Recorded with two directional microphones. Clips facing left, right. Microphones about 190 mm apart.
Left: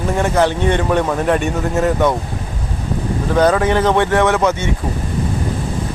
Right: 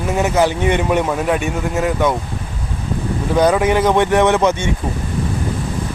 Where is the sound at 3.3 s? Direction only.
10° right (ahead or behind).